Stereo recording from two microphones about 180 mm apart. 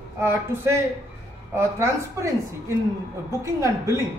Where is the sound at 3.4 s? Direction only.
15° right (ahead or behind).